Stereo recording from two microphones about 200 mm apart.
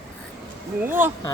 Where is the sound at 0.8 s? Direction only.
10° right (ahead or behind).